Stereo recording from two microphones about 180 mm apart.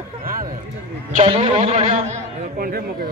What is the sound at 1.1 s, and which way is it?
A man's voice, 40° right (ahead or behind).